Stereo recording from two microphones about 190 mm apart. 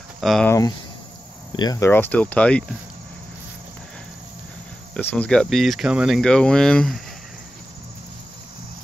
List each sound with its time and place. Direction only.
0.2 s speech: centre (ahead or behind)
0.5 s speech: 20° left (ahead or behind)
5.1 s speech: 5° left (ahead or behind)